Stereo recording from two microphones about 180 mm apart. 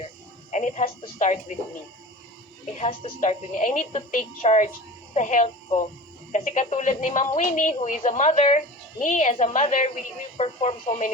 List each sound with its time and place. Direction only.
0.5 s speech: 40° left (ahead or behind)
2.7 s speech: 40° left (ahead or behind)